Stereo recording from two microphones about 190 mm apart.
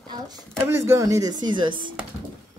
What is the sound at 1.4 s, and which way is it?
Speech, 25° right (ahead or behind).